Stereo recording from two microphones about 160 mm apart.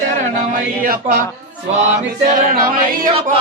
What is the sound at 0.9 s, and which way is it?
Speech, 65° right (ahead or behind).